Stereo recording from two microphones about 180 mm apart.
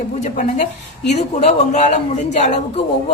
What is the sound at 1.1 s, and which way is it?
A woman's voice, 40° left (ahead or behind).